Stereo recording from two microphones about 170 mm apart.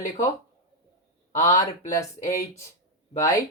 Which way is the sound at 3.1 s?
20° left (ahead or behind).